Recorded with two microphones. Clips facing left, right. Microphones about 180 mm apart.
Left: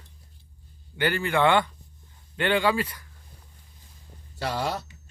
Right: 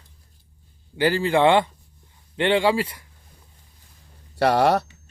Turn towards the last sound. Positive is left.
turn(degrees=-70)  # may be behind; listen again after turning